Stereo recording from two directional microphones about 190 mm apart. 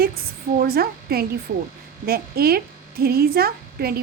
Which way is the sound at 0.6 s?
55° right (ahead or behind).